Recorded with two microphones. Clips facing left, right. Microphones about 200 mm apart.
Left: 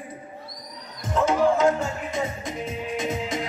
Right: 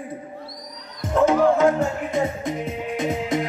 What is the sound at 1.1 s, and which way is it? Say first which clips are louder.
Music: right 4 dB; 55° right (ahead or behind).